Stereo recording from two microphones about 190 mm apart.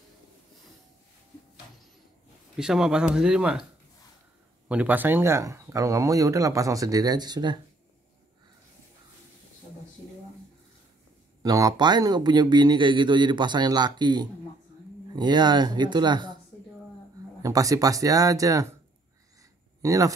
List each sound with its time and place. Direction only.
2.5 s speech: 5° right (ahead or behind)
4.6 s speech: 5° right (ahead or behind)
11.4 s speech: 20° right (ahead or behind)
17.4 s speech: 20° right (ahead or behind)
19.8 s speech: 15° right (ahead or behind)